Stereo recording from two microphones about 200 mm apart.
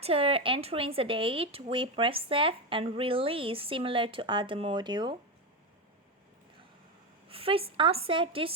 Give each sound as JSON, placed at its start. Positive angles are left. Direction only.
{"t": 0.0, "sound": "speech", "side_deg": -30}
{"t": 7.3, "sound": "speech", "side_deg": -30}